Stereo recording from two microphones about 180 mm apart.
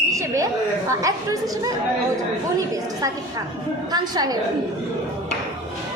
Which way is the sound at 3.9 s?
20° right (ahead or behind).